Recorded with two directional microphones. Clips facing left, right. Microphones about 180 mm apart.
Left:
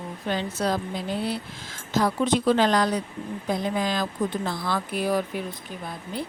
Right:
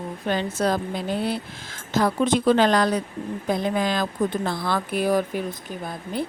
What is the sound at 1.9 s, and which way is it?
Speech, 55° right (ahead or behind).